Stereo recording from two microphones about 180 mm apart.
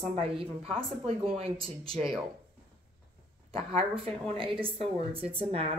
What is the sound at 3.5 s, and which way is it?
Speech, 30° right (ahead or behind).